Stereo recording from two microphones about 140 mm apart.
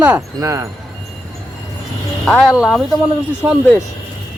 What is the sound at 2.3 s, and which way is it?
Speech, centre (ahead or behind).